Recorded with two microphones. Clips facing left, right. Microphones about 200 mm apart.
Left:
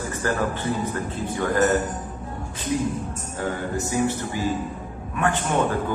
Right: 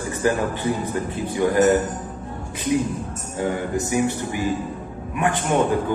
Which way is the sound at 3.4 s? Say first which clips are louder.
Right 4 dB; 15° right (ahead or behind).